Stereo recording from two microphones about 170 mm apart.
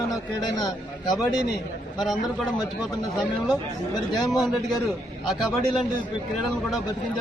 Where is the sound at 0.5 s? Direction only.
25° left (ahead or behind).